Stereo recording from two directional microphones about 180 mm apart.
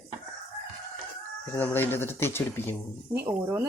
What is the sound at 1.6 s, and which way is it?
Speech, 10° left (ahead or behind).